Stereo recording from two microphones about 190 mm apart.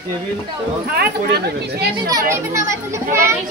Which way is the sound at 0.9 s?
60° right (ahead or behind).